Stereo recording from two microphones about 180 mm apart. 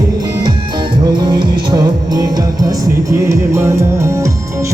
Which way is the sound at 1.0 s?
25° right (ahead or behind).